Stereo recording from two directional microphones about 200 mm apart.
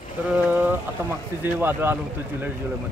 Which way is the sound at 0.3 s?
10° right (ahead or behind).